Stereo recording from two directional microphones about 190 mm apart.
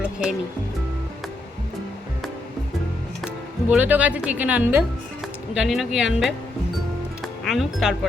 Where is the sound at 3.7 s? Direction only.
10° right (ahead or behind).